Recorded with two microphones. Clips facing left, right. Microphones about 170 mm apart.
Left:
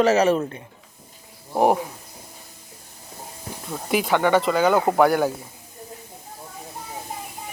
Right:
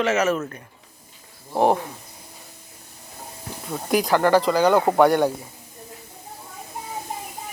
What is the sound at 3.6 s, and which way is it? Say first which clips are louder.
Speech: right 1 dB; centre (ahead or behind).